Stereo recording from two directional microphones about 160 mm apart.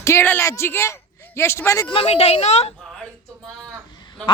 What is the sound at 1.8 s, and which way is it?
Speech, 40° left (ahead or behind).